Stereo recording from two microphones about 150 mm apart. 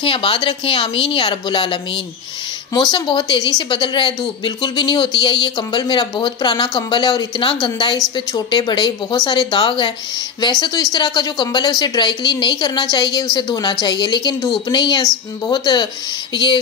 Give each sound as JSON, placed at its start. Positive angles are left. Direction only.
{"t": 0.0, "sound": "a woman's voice", "side_deg": 35}